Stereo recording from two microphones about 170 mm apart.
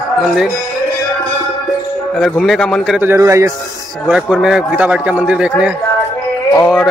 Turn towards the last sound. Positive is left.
turn(degrees=5)  # may be behind; listen again after turning